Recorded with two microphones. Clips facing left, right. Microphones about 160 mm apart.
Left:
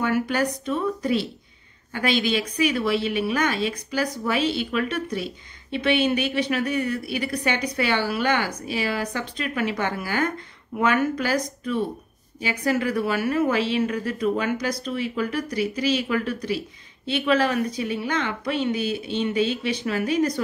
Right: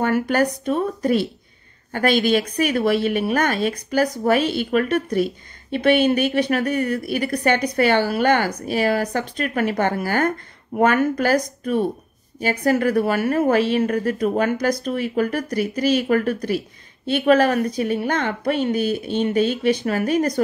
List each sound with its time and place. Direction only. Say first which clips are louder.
0.0 s a woman's voice: right 4 dB; 50° right (ahead or behind)